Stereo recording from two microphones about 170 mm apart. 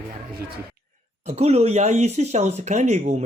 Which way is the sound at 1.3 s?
35° right (ahead or behind).